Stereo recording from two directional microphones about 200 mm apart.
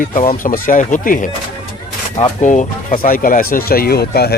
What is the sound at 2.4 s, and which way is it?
Speech, 40° left (ahead or behind).